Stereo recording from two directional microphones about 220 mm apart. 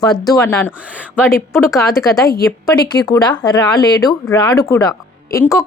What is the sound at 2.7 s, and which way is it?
Speech, 20° left (ahead or behind).